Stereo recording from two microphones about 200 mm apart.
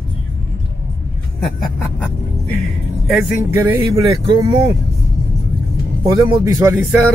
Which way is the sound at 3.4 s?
15° right (ahead or behind).